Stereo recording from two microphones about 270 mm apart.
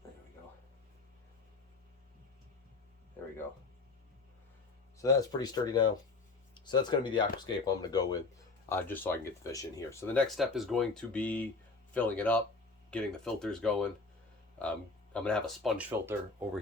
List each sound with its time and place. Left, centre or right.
4.9 s speech: centre
15.1 s speech: centre